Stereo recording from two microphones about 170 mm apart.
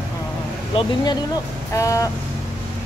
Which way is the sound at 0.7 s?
25° left (ahead or behind).